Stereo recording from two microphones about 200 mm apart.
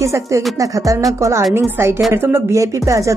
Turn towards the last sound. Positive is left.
turn(degrees=-15)  # may be behind; listen again after turning